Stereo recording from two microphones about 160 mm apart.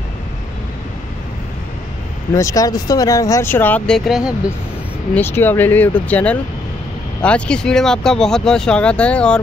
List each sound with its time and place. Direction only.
2.3 s speech: 20° left (ahead or behind); by 4.4 s 5° right (ahead or behind)
5.1 s speech: 15° left (ahead or behind)